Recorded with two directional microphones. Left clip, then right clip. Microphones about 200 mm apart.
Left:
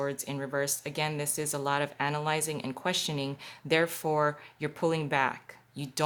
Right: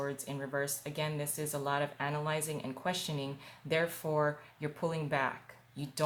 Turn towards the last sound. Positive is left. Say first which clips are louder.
# left 5 dB
turn(degrees=45)  # may be behind; listen again after turning